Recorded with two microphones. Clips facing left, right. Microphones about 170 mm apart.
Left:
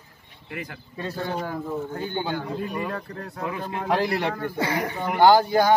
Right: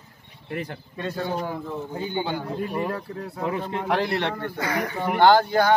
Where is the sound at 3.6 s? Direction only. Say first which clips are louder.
Left 3 dB; 5° left (ahead or behind).